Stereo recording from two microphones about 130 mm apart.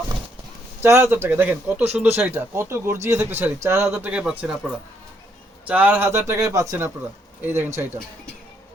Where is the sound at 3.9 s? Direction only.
10° right (ahead or behind).